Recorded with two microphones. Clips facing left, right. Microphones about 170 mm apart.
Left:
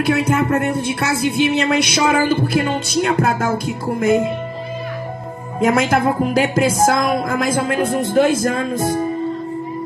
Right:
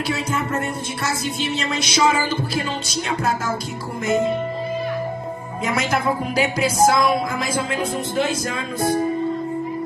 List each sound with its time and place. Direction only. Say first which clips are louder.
0.0 s speech: left 7 dB; 60° left (ahead or behind)
5.6 s speech: left 7 dB; 50° left (ahead or behind)